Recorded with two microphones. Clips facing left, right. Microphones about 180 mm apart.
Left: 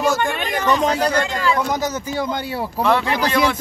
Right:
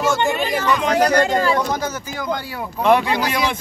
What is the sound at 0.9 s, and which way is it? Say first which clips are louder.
Speech: right 4 dB; 60° right (ahead or behind).